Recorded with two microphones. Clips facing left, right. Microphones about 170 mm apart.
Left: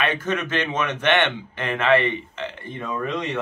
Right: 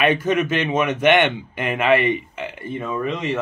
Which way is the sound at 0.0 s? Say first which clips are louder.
Right 6 dB; 10° right (ahead or behind).